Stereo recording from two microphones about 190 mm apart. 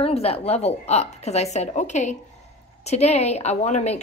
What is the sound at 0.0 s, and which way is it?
Speech, 30° left (ahead or behind).